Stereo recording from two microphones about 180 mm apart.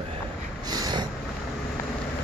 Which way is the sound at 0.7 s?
20° right (ahead or behind).